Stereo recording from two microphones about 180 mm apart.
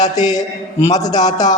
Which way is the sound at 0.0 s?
20° left (ahead or behind).